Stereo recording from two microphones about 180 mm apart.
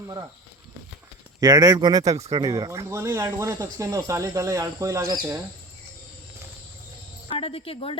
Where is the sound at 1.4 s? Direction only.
20° right (ahead or behind).